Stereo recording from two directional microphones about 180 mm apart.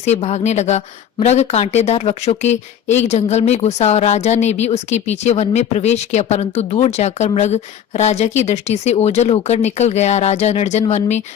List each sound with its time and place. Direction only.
0.0 s speech: 40° left (ahead or behind)